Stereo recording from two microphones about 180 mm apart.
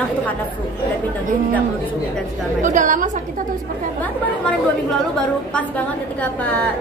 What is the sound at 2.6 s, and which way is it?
Speech, 45° right (ahead or behind).